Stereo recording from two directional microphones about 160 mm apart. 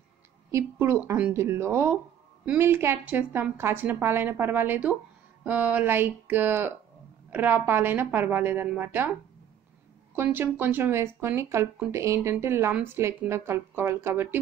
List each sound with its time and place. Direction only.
0.5 s speech: 15° right (ahead or behind)
10.1 s speech: 15° right (ahead or behind)